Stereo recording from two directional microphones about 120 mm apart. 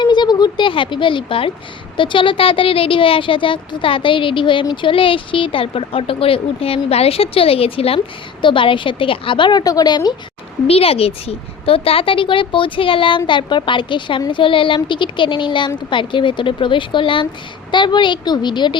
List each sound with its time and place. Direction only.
0.0 s a woman's voice: 40° left (ahead or behind)
10.7 s a woman's voice: 55° left (ahead or behind); by 18.8 s 40° left (ahead or behind)